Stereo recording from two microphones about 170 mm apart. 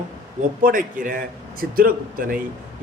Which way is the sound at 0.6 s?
55° right (ahead or behind).